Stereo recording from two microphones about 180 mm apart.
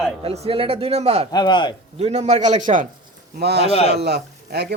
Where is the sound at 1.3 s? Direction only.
25° left (ahead or behind).